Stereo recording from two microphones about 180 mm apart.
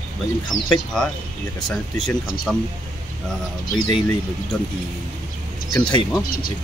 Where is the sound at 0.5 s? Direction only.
45° left (ahead or behind).